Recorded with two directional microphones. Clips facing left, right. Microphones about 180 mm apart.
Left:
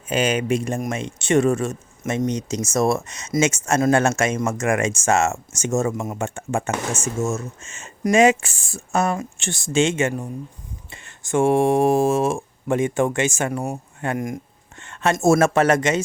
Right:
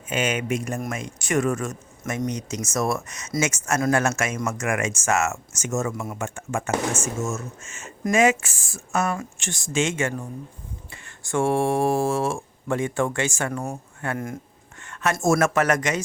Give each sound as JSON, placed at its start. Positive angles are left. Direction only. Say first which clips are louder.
{"t": 0.1, "sound": "speech", "louder": "left 4 dB", "side_deg": 35}